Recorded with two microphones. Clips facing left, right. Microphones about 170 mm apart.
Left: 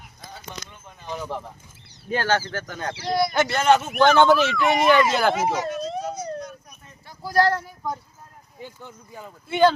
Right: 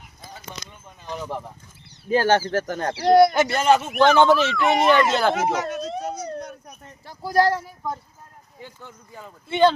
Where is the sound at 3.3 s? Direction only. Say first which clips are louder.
Even; 5° right (ahead or behind).